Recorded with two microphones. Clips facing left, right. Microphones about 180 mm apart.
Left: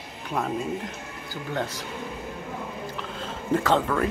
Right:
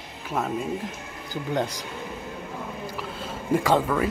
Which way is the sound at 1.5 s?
15° right (ahead or behind).